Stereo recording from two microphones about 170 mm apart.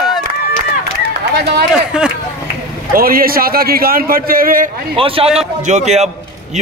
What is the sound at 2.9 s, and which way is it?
A man's voice, 60° right (ahead or behind).